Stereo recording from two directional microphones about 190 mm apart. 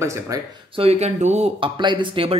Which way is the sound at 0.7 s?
35° right (ahead or behind).